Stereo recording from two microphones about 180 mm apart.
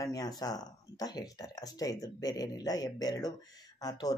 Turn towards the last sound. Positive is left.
turn(degrees=20)  # may be behind; listen again after turning